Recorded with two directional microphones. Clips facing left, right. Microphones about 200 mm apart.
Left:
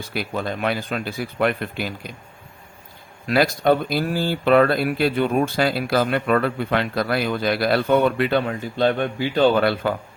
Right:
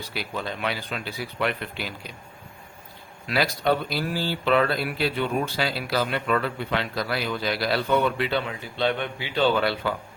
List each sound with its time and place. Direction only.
0.0 s speech: 50° left (ahead or behind)
3.2 s speech: 45° left (ahead or behind)